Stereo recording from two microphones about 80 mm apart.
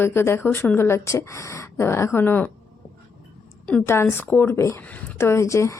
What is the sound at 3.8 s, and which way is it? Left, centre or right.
A woman's voice, left.